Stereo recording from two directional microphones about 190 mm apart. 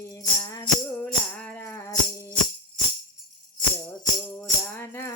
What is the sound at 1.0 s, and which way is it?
Music, 10° left (ahead or behind).